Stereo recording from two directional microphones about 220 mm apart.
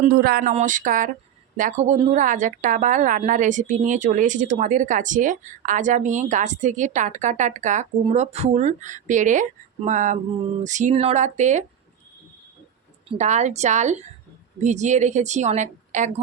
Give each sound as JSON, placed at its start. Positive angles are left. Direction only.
{"t": 0.0, "sound": "speech", "side_deg": -40}
{"t": 13.1, "sound": "speech", "side_deg": -30}